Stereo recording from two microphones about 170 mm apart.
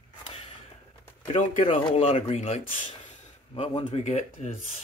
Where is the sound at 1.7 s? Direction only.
35° left (ahead or behind).